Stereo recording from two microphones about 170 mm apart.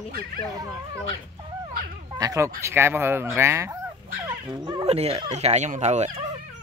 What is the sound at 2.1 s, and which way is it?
Speech, 20° right (ahead or behind).